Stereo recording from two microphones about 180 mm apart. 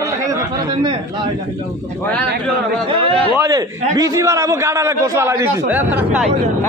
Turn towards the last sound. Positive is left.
turn(degrees=-10)  # may be behind; listen again after turning